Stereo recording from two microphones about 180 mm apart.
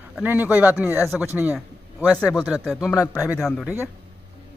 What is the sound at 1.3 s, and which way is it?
Speech, 10° right (ahead or behind).